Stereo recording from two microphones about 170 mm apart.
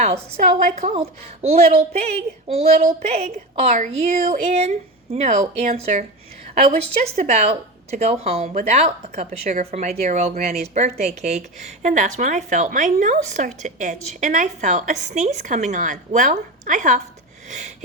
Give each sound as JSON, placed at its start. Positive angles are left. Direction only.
{"t": 0.0, "sound": "a woman's voice", "side_deg": -45}